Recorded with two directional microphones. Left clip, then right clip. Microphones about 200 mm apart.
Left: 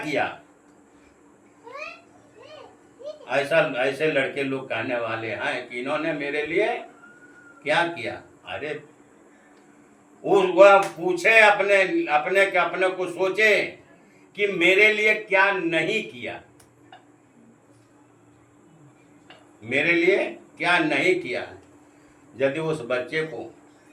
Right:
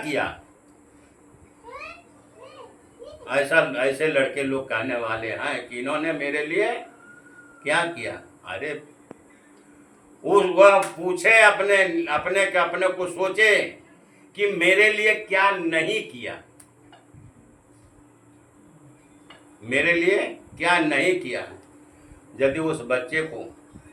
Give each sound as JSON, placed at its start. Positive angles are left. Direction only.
{"t": 3.2, "sound": "a man's voice", "side_deg": -20}
{"t": 10.2, "sound": "a man's voice", "side_deg": -15}
{"t": 19.6, "sound": "a man's voice", "side_deg": -15}
{"t": 22.4, "sound": "a man's voice", "side_deg": -15}